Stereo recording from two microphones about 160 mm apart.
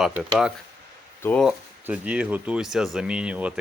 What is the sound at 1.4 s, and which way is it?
Speech, 5° right (ahead or behind).